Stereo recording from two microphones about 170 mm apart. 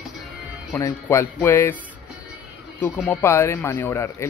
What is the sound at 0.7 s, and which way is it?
Speech, 15° left (ahead or behind).